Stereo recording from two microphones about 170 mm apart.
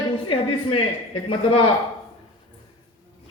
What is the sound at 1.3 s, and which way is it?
Speech, 30° left (ahead or behind).